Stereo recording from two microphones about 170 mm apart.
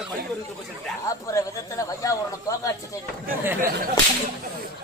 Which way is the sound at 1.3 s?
20° left (ahead or behind).